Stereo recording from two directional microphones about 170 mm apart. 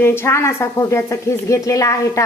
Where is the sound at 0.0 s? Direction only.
15° left (ahead or behind).